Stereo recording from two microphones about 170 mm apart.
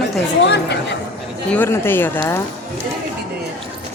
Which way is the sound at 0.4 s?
90° left.